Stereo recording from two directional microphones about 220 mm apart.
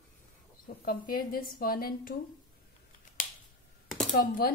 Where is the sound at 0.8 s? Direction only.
40° left (ahead or behind).